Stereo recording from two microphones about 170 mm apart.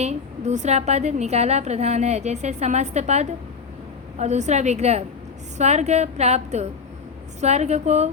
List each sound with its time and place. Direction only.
0.0 s a woman's voice: 40° right (ahead or behind)